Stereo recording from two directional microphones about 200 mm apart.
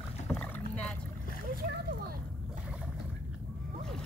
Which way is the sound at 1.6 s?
50° right (ahead or behind).